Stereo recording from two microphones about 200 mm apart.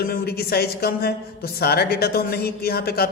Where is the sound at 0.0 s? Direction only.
50° left (ahead or behind).